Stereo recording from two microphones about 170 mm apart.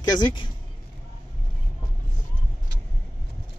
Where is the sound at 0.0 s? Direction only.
25° left (ahead or behind).